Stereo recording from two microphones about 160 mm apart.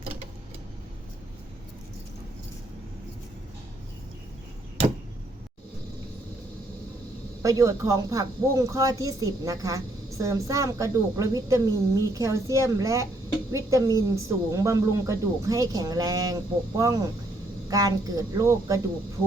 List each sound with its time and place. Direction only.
7.4 s speech: 20° right (ahead or behind)